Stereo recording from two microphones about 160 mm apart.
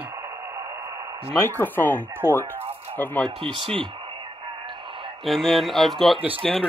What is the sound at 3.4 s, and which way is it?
Speech, 30° right (ahead or behind).